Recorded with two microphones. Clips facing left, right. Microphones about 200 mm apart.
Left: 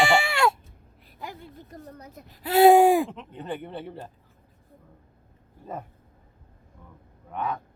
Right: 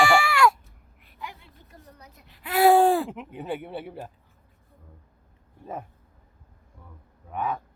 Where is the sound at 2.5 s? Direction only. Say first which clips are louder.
Left 3 dB; 20° left (ahead or behind).